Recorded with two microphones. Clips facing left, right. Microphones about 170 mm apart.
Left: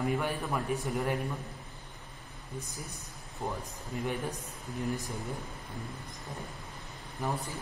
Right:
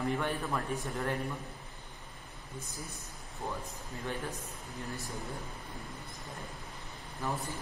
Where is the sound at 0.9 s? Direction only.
15° left (ahead or behind).